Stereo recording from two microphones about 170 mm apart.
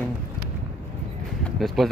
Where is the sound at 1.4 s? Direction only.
Centre (ahead or behind).